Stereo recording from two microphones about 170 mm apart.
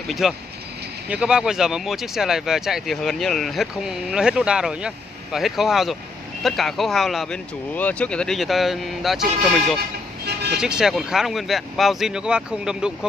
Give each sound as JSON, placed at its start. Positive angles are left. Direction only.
{"t": 0.2, "sound": "speech", "side_deg": 0}
{"t": 9.8, "sound": "vehicle", "side_deg": -75}
{"t": 10.6, "sound": "speech", "side_deg": -5}